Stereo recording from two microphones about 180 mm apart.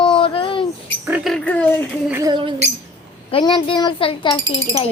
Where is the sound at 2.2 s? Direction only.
25° right (ahead or behind).